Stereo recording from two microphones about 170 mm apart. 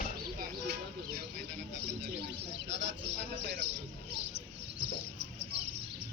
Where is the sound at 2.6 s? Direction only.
90° right.